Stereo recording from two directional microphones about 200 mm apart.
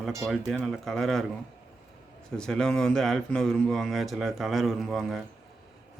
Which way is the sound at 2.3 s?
5° left (ahead or behind).